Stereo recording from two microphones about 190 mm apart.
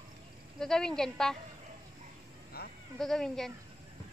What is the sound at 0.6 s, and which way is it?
Speech, 5° left (ahead or behind).